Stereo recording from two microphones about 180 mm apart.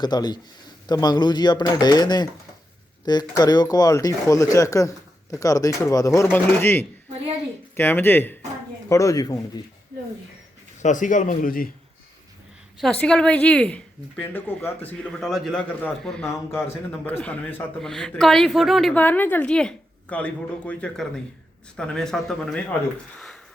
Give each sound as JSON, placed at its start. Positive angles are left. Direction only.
{"t": 0.0, "sound": "a woman's voice", "side_deg": 25}
{"t": 10.8, "sound": "a man's voice", "side_deg": 45}
{"t": 12.8, "sound": "a woman's voice", "side_deg": 5}